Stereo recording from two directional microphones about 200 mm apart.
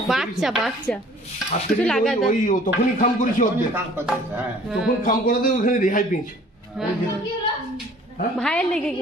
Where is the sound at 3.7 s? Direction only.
10° right (ahead or behind).